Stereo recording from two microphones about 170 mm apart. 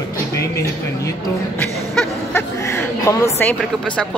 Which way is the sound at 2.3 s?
15° left (ahead or behind).